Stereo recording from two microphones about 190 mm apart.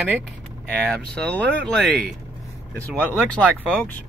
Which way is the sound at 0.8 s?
5° left (ahead or behind).